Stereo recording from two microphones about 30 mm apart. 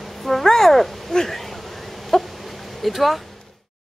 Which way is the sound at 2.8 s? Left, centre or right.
Centre.